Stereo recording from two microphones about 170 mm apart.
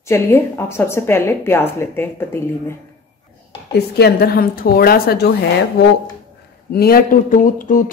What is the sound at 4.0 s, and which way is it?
A woman's voice, 60° left (ahead or behind).